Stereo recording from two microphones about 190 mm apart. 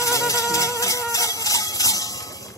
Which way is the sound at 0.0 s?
15° left (ahead or behind).